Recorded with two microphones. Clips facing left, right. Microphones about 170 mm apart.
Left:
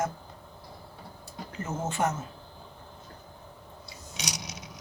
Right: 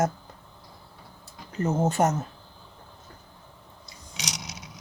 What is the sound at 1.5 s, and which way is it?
Speech, 40° right (ahead or behind).